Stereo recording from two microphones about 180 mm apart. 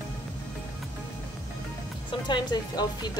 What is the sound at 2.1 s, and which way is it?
A woman's voice, 25° left (ahead or behind).